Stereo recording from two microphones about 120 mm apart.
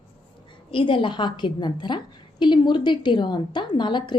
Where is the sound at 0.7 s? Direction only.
45° left (ahead or behind).